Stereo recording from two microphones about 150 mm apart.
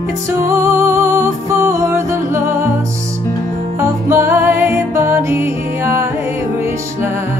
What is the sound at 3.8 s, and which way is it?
Music, 15° right (ahead or behind).